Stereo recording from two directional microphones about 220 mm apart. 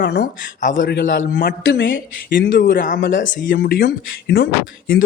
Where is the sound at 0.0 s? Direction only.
50° left (ahead or behind).